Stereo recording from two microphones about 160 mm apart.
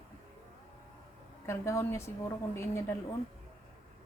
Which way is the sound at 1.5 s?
15° left (ahead or behind).